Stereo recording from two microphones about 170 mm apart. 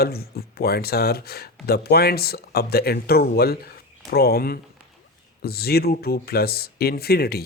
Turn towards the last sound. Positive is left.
turn(degrees=65)  # may be behind; listen again after turning